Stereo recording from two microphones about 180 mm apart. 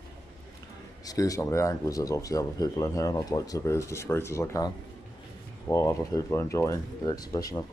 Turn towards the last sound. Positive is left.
turn(degrees=20)  # may be behind; listen again after turning